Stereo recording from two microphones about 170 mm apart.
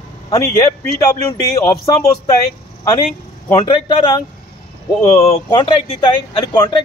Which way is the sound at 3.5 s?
25° left (ahead or behind).